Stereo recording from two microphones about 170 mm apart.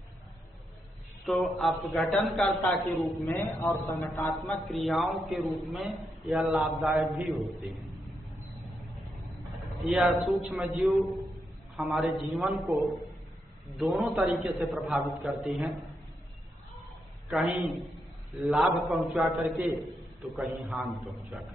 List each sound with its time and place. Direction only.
1.2 s a man's voice: centre (ahead or behind)
3.3 s a man's voice: 15° left (ahead or behind)
4.5 s a man's voice: centre (ahead or behind)
9.7 s a man's voice: centre (ahead or behind)
17.3 s a man's voice: centre (ahead or behind)